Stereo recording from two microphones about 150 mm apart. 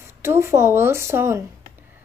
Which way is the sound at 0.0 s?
15° right (ahead or behind).